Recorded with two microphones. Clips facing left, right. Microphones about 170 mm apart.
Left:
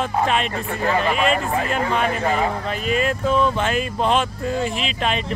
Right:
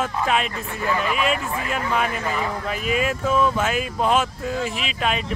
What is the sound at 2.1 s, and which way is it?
Speech, 50° left (ahead or behind).